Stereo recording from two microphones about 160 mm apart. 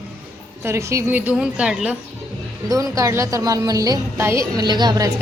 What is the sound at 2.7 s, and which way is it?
A woman's voice, 20° right (ahead or behind).